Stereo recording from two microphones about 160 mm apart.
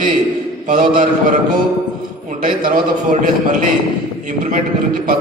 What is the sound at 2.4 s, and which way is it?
A man's voice, 60° right (ahead or behind).